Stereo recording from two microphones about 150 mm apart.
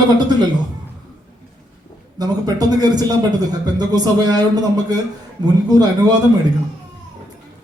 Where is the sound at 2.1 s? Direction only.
25° right (ahead or behind).